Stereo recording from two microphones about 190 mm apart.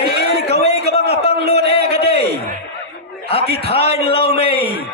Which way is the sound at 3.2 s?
30° left (ahead or behind).